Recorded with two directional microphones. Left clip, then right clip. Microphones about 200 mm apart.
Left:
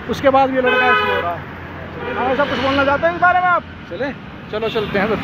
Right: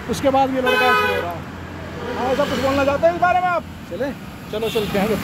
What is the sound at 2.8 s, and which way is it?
Speech, centre (ahead or behind).